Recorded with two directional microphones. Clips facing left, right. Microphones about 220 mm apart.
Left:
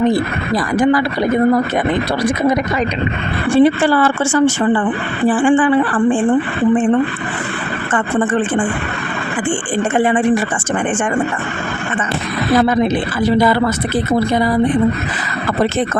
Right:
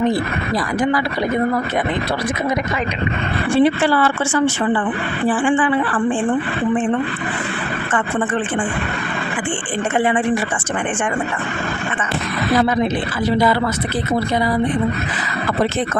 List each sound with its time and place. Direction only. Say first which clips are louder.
3.6 s speech: left 3 dB; 45° left (ahead or behind)